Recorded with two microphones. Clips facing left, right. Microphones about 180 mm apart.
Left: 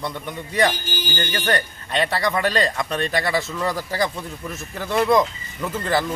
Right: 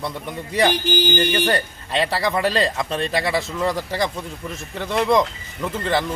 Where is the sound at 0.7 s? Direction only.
75° right (ahead or behind).